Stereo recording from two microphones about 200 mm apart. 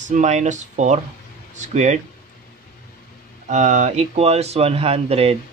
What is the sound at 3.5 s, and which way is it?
Speech, 35° right (ahead or behind).